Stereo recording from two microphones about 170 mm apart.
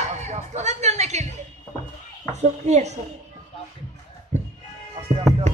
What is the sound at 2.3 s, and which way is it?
Speech, 40° right (ahead or behind).